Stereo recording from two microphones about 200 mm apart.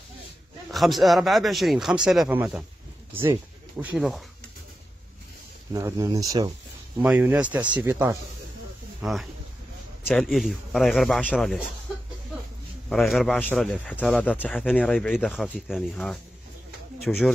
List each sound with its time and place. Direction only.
0.7 s speech: centre (ahead or behind)
5.7 s speech: 15° right (ahead or behind)
7.0 s speech: 10° right (ahead or behind)
9.0 s speech: centre (ahead or behind)
12.9 s speech: centre (ahead or behind)